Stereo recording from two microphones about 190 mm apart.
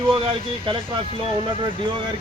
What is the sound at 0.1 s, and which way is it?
Speech, 25° right (ahead or behind).